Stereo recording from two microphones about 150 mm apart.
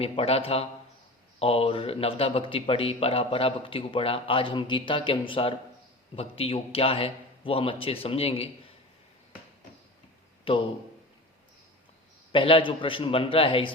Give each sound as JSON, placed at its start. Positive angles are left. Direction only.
{"t": 0.0, "sound": "speech", "side_deg": 40}
{"t": 10.5, "sound": "speech", "side_deg": 35}
{"t": 12.3, "sound": "speech", "side_deg": 35}